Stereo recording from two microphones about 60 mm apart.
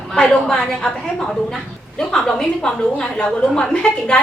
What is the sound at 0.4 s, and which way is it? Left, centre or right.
Speech, centre.